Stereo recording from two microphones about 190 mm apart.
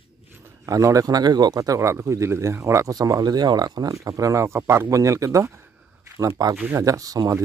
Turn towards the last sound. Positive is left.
turn(degrees=-20)  # may be behind; listen again after turning